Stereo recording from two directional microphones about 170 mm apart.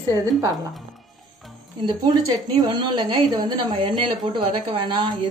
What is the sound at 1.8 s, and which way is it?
A woman's voice, 25° right (ahead or behind).